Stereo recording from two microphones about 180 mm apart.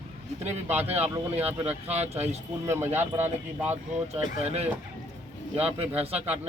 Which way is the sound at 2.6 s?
15° right (ahead or behind).